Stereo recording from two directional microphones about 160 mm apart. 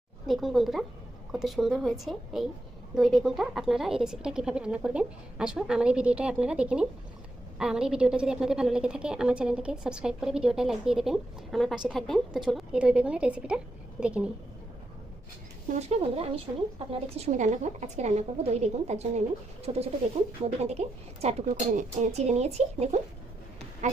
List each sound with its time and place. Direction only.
0.3 s a woman's voice: centre (ahead or behind)
15.8 s a woman's voice: 40° right (ahead or behind)